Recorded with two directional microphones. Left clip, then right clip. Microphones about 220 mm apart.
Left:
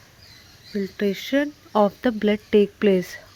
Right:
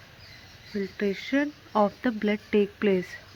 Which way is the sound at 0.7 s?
50° left (ahead or behind).